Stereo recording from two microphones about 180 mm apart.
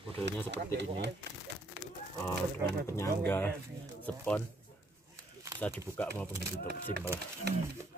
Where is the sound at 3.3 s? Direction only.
10° left (ahead or behind).